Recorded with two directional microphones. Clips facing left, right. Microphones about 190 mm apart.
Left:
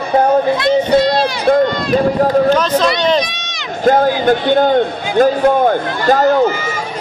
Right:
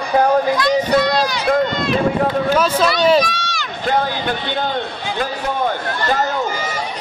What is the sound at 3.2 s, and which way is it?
Run, 20° left (ahead or behind).